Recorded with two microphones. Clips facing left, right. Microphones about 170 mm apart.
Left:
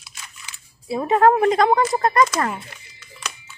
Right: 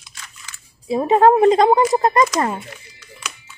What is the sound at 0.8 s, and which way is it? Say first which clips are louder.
A woman's voice: right 3 dB; 20° right (ahead or behind).